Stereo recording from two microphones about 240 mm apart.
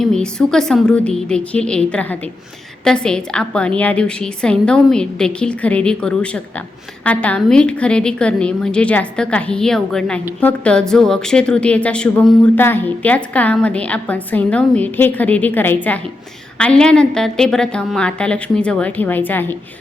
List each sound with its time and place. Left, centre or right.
0.0 s a woman's voice: centre